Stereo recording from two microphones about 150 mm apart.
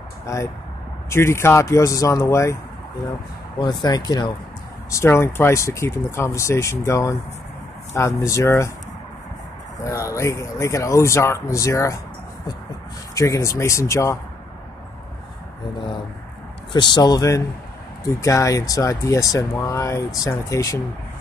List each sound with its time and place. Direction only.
0.3 s speech: 20° left (ahead or behind)
3.5 s speech: 30° left (ahead or behind)
9.8 s speech: 20° left (ahead or behind)
13.1 s speech: 20° left (ahead or behind)
16.7 s speech: 30° left (ahead or behind)